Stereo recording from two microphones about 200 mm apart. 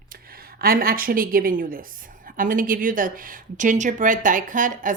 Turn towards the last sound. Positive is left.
turn(degrees=-40)  # may be behind; listen again after turning